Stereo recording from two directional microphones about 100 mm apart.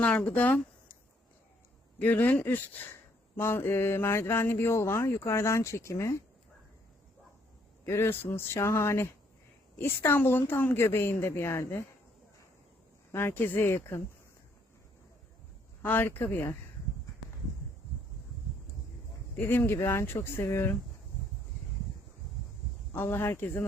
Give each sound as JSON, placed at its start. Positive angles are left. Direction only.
{"t": 0.0, "sound": "speech", "side_deg": 15}
{"t": 2.0, "sound": "speech", "side_deg": 15}
{"t": 7.9, "sound": "speech", "side_deg": 25}
{"t": 13.1, "sound": "speech", "side_deg": 25}
{"t": 15.8, "sound": "speech", "side_deg": 20}
{"t": 19.4, "sound": "speech", "side_deg": 20}
{"t": 22.9, "sound": "speech", "side_deg": 20}